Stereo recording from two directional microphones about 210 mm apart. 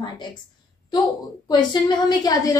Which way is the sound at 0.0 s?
20° left (ahead or behind).